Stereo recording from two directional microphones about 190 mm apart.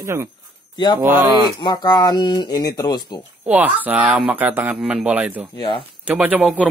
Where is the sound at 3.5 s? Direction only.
10° right (ahead or behind).